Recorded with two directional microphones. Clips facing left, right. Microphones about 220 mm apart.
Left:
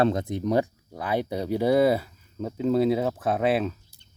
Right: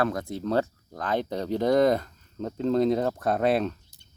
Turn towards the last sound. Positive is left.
turn(degrees=5)  # may be behind; listen again after turning